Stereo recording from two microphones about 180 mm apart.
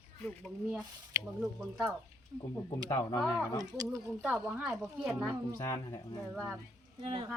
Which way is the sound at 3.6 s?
20° right (ahead or behind).